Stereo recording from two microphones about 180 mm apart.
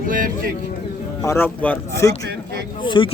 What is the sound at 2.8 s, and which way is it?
Speech, 25° left (ahead or behind).